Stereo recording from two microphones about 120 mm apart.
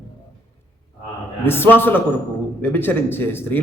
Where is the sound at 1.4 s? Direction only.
20° left (ahead or behind).